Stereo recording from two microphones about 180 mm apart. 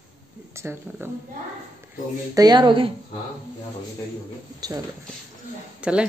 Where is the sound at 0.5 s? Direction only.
15° right (ahead or behind).